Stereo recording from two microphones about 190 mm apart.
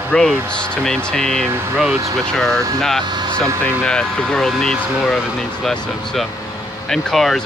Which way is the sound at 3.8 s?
5° left (ahead or behind).